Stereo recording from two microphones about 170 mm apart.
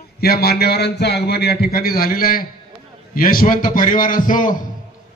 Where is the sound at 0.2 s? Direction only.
65° left (ahead or behind).